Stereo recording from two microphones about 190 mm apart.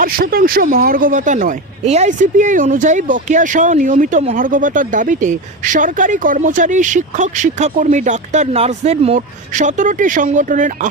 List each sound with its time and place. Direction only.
0.0 s speech: 50° right (ahead or behind)